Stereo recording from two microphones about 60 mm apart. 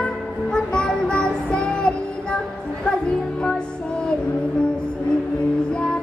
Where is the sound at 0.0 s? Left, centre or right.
Centre.